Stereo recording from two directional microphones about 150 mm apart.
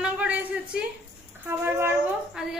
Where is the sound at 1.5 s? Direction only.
15° right (ahead or behind).